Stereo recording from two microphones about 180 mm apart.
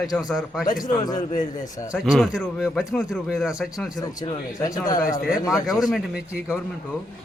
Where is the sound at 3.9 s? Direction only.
20° left (ahead or behind).